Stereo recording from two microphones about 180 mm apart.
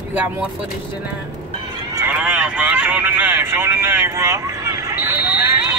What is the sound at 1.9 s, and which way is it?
Vehicle, 10° right (ahead or behind).